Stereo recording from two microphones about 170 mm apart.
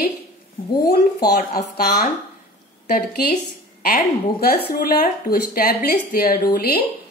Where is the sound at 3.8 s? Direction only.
60° left (ahead or behind).